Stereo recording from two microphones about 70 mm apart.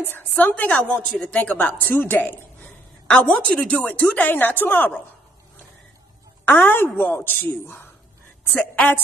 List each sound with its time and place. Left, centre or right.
0.0 s a woman's voice: left
6.4 s speech: left